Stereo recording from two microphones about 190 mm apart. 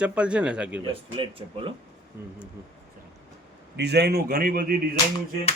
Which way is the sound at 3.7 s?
60° right (ahead or behind).